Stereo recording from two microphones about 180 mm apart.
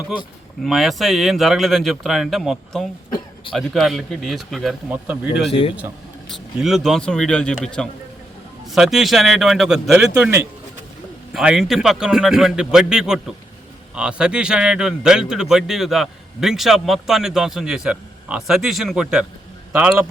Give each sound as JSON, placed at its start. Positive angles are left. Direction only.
{"t": 0.6, "sound": "a man's voice", "side_deg": 0}
{"t": 5.5, "sound": "a man's voice", "side_deg": 30}
{"t": 6.2, "sound": "a man's voice", "side_deg": 0}
{"t": 11.3, "sound": "a man's voice", "side_deg": 0}